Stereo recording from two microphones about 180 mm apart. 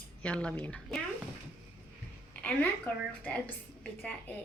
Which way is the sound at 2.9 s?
10° left (ahead or behind).